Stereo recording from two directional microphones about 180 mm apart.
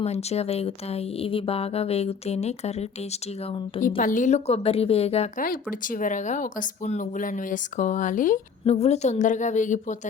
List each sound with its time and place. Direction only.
0.0 s speech: 35° left (ahead or behind)
3.8 s speech: 50° left (ahead or behind)
5.8 s speech: 45° left (ahead or behind)